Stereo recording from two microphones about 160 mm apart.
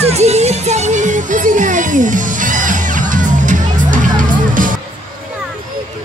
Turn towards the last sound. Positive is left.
turn(degrees=-55)  # may be behind; listen again after turning